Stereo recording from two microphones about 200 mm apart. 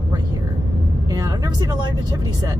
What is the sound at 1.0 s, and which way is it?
Speech, 20° right (ahead or behind).